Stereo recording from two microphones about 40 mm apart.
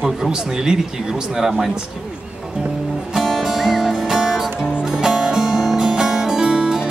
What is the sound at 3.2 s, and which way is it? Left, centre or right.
Music, centre.